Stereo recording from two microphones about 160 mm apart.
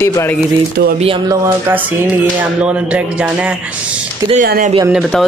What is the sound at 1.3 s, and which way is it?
A man's voice, 15° right (ahead or behind).